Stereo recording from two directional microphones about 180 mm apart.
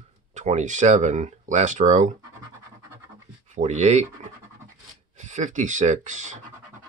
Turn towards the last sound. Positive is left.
turn(degrees=-40)  # may be behind; listen again after turning